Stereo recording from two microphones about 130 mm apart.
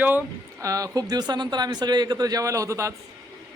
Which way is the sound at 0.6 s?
25° right (ahead or behind).